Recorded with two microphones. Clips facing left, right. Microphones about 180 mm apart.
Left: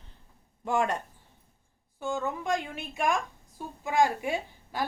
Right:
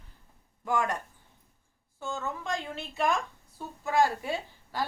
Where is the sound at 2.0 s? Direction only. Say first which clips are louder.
Left 4 dB; 15° left (ahead or behind).